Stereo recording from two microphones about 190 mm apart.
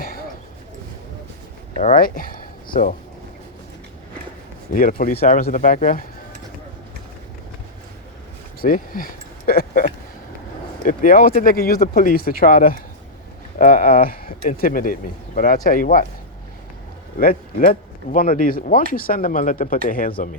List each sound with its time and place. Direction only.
1.7 s speech: 35° left (ahead or behind)
4.7 s speech: 45° left (ahead or behind)
8.6 s a sound: 50° left (ahead or behind)
10.8 s speech: 45° left (ahead or behind)
17.2 s speech: 50° left (ahead or behind)